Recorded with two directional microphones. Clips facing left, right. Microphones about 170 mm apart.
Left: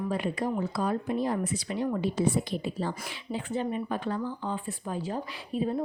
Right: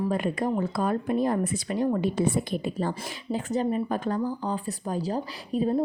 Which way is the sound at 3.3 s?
40° right (ahead or behind).